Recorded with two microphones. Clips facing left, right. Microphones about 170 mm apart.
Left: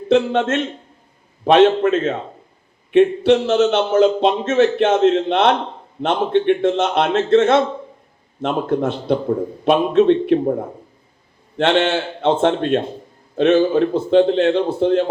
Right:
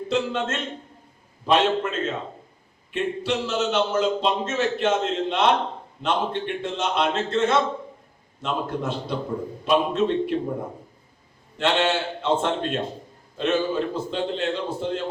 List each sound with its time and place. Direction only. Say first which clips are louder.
0.1 s a man's voice: left 10 dB; 55° left (ahead or behind)
11.5 s a man's voice: left 6 dB; 55° left (ahead or behind)